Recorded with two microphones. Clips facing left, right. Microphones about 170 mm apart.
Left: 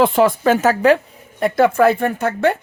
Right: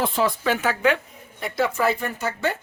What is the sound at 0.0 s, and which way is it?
Speech, 60° left (ahead or behind).